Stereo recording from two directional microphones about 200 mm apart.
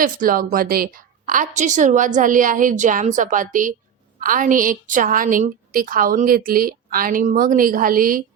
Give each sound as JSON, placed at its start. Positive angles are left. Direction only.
{"t": 0.0, "sound": "a woman's voice", "side_deg": -45}